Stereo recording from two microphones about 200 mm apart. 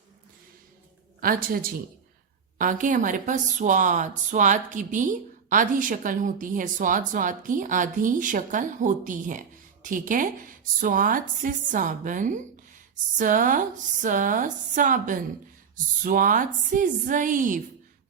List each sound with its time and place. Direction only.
1.2 s speech: 45° right (ahead or behind)